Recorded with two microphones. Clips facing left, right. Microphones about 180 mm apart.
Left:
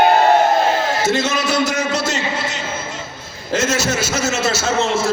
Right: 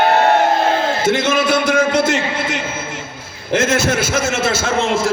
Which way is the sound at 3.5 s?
55° right (ahead or behind).